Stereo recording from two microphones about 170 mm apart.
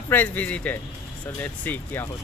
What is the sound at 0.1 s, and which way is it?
Speech, 10° left (ahead or behind).